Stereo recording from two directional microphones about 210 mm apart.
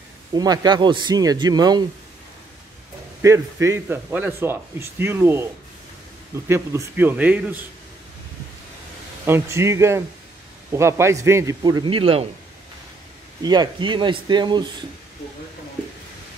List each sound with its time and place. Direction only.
0.3 s a man's voice: 20° right (ahead or behind)
3.2 s a man's voice: 15° right (ahead or behind)
9.2 s a man's voice: 10° right (ahead or behind); by 12.3 s 25° right (ahead or behind)
13.4 s a man's voice: 20° right (ahead or behind)